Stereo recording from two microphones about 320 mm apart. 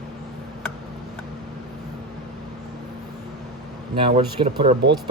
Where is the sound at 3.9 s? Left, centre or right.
Centre.